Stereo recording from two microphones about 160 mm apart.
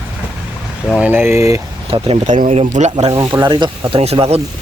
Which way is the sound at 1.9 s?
35° right (ahead or behind).